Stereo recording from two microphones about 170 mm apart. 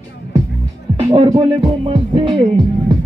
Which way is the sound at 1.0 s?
35° right (ahead or behind).